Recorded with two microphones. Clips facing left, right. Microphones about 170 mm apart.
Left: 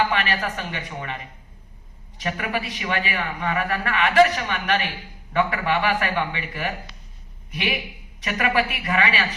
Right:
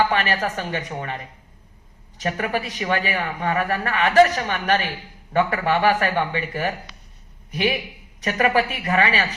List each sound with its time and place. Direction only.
0.1 s speech: 40° right (ahead or behind)
2.2 s a man's voice: 40° right (ahead or behind)